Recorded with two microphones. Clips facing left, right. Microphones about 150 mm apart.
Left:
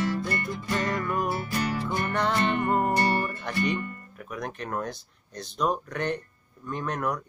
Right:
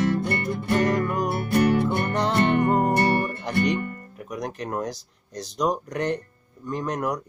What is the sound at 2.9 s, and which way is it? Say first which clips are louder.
Music: right 3 dB; 60° right (ahead or behind).